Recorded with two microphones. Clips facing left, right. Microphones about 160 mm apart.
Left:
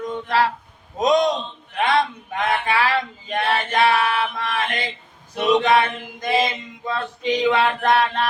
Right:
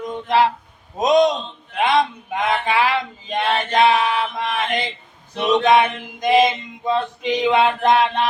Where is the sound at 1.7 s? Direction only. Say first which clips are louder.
Right 2 dB; 20° right (ahead or behind).